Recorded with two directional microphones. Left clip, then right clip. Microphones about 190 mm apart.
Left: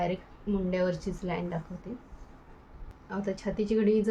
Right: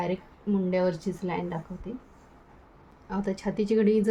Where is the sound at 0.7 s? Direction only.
35° right (ahead or behind).